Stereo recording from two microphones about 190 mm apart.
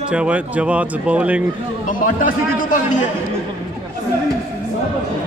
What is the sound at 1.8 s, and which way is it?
Speech, 45° left (ahead or behind).